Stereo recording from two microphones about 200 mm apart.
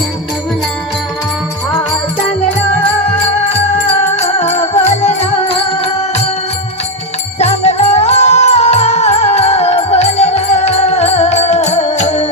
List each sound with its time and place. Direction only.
4.4 s music: 30° left (ahead or behind)
7.3 s music: 35° left (ahead or behind)